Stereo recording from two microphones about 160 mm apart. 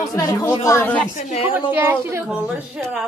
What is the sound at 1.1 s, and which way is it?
Speech, 40° left (ahead or behind).